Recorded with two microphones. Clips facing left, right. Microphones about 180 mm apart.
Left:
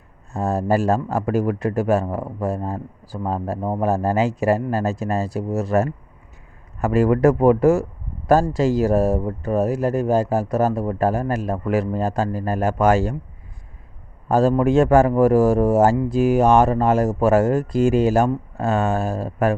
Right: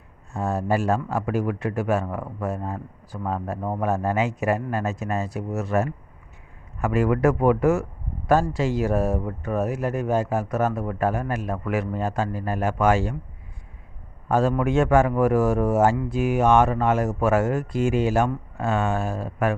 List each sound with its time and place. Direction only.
0.3 s speech: 40° left (ahead or behind)
14.3 s speech: 35° left (ahead or behind)